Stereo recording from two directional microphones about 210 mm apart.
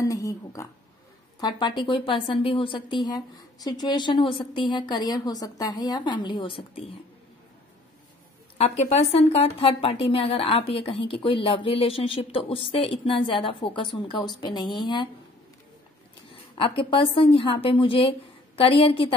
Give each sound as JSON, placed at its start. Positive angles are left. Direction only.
{"t": 0.0, "sound": "a sound", "side_deg": 15}
{"t": 1.4, "sound": "a woman's voice", "side_deg": 20}
{"t": 8.5, "sound": "a woman's voice", "side_deg": 30}
{"t": 16.5, "sound": "a woman's voice", "side_deg": 25}